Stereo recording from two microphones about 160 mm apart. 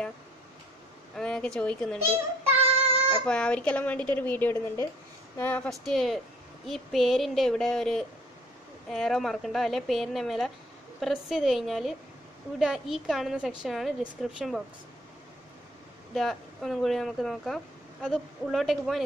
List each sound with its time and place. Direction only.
1.1 s a woman's voice: 5° left (ahead or behind)
2.6 s child singing: 35° right (ahead or behind)
3.3 s a woman's voice: 5° left (ahead or behind)
16.1 s a woman's voice: centre (ahead or behind)